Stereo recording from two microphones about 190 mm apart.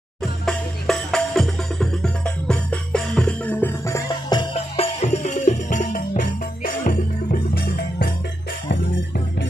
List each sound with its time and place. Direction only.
0.2 s music: centre (ahead or behind); by 8.1 s 50° left (ahead or behind)